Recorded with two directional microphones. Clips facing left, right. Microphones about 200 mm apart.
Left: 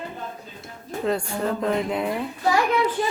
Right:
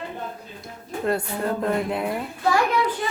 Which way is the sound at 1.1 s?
5° right (ahead or behind).